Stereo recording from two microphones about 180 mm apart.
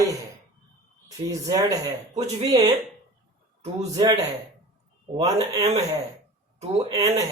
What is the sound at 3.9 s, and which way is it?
A man's voice, 20° right (ahead or behind).